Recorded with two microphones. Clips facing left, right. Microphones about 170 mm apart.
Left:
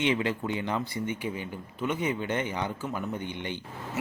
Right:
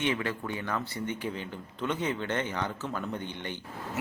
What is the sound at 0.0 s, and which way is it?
Speech, 20° left (ahead or behind).